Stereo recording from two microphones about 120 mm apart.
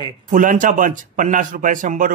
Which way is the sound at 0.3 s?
90° right.